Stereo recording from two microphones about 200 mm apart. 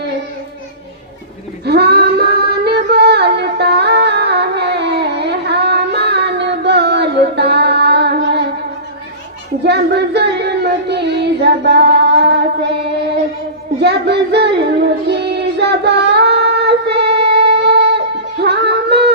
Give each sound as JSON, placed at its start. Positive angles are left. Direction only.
{"t": 1.6, "sound": "female singing", "side_deg": -55}
{"t": 9.6, "sound": "child singing", "side_deg": -55}